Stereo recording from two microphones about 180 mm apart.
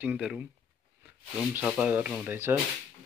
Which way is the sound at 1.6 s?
5° right (ahead or behind).